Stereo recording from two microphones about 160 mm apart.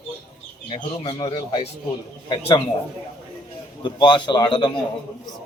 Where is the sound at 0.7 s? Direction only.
35° left (ahead or behind).